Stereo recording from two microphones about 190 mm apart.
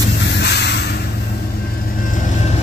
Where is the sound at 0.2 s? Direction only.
65° left (ahead or behind).